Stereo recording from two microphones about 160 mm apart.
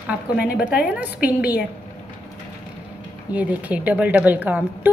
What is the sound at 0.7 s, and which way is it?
Speech, 5° right (ahead or behind).